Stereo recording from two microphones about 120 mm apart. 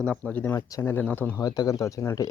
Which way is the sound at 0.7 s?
30° left (ahead or behind).